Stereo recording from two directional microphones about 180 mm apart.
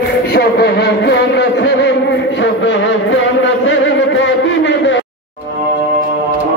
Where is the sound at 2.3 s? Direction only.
90° left.